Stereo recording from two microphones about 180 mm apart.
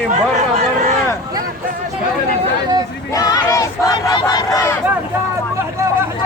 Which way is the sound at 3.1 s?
20° left (ahead or behind).